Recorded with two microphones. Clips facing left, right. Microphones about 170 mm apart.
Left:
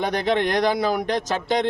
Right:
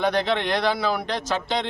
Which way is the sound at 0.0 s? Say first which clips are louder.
Left 1 dB; 15° left (ahead or behind).